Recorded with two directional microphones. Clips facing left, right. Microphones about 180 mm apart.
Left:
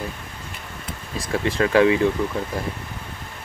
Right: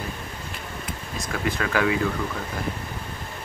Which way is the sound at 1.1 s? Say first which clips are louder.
Left 5 dB; 30° left (ahead or behind).